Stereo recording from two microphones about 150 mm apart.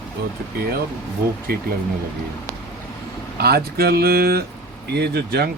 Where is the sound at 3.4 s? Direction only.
90° right.